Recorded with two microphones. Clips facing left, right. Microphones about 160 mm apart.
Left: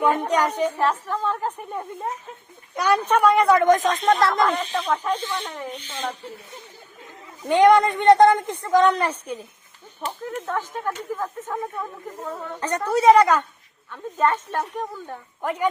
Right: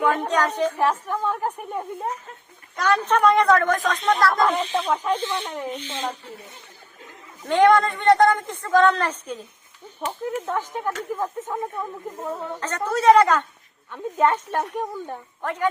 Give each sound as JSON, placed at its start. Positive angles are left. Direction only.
{"t": 0.0, "sound": "a woman's voice", "side_deg": 15}
{"t": 0.8, "sound": "speech", "side_deg": -15}
{"t": 2.7, "sound": "a woman's voice", "side_deg": 10}
{"t": 4.7, "sound": "speech", "side_deg": -15}
{"t": 7.4, "sound": "a woman's voice", "side_deg": 15}
{"t": 10.3, "sound": "speech", "side_deg": -10}
{"t": 11.4, "sound": "speech", "side_deg": 0}
{"t": 12.1, "sound": "speech", "side_deg": -15}
{"t": 12.5, "sound": "a woman's voice", "side_deg": 15}
{"t": 13.9, "sound": "speech", "side_deg": -15}
{"t": 15.4, "sound": "a woman's voice", "side_deg": 10}